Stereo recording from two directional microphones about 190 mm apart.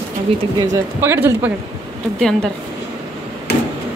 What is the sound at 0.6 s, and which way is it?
Speech, 15° right (ahead or behind).